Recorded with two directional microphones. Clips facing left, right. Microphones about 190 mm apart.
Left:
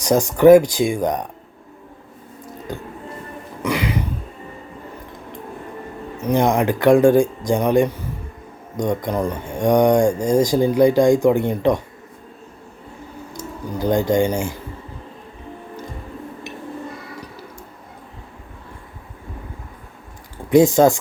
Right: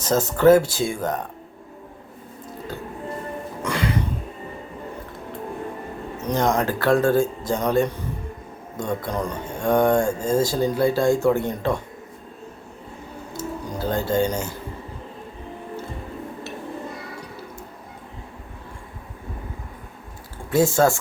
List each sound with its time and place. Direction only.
0.0 s speech: 15° left (ahead or behind)
3.6 s music: 10° left (ahead or behind)
6.2 s speech: 15° left (ahead or behind)
13.7 s speech: 15° left (ahead or behind)
20.5 s speech: 20° left (ahead or behind)